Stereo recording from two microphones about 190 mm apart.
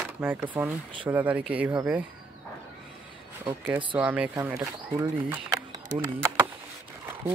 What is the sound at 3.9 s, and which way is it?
Speech, 5° right (ahead or behind).